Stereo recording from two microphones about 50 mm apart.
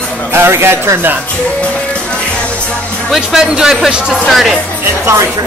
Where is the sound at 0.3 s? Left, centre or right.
Right.